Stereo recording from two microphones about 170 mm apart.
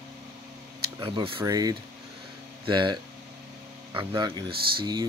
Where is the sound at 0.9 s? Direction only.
30° right (ahead or behind).